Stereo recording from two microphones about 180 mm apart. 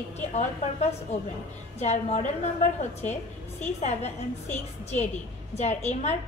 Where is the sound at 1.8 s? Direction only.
40° left (ahead or behind).